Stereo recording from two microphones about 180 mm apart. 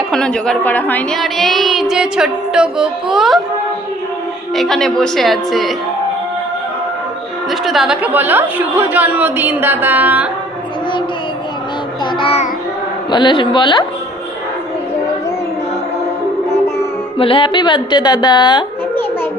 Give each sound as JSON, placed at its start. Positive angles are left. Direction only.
{"t": 0.1, "sound": "a woman's voice", "side_deg": 5}
{"t": 4.5, "sound": "a woman's voice", "side_deg": 0}
{"t": 7.6, "sound": "a woman's voice", "side_deg": 0}
{"t": 12.2, "sound": "child singing", "side_deg": 35}
{"t": 13.1, "sound": "a woman's voice", "side_deg": 25}
{"t": 17.2, "sound": "a woman's voice", "side_deg": 30}